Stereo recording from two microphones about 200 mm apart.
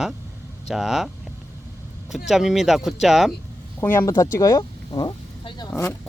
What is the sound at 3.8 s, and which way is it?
Speech, 10° left (ahead or behind).